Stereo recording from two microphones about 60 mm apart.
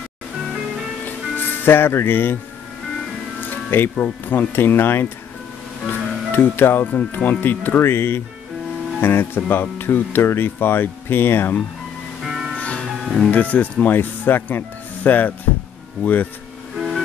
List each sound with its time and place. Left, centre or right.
1.0 s music: left
3.3 s music: left
3.9 s speech: left
7.3 s speech: left
12.3 s music: centre
12.5 s music: centre
13.3 s speech: left
16.7 s music: centre